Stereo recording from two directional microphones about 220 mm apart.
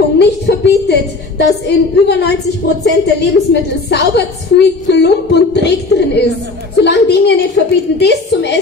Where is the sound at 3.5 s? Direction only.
50° left (ahead or behind).